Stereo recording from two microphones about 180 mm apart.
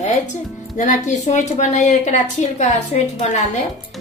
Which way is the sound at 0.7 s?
45° left (ahead or behind).